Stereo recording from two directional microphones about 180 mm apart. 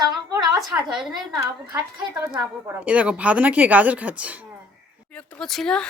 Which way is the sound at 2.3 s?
5° right (ahead or behind).